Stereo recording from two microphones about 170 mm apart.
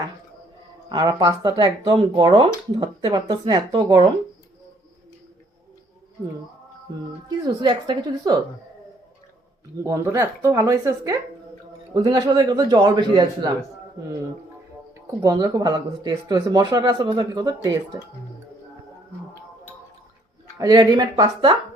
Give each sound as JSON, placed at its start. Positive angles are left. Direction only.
{"t": 0.9, "sound": "speech", "side_deg": -25}
{"t": 7.3, "sound": "speech", "side_deg": -25}
{"t": 9.8, "sound": "speech", "side_deg": -20}
{"t": 15.2, "sound": "speech", "side_deg": -20}
{"t": 20.6, "sound": "speech", "side_deg": -25}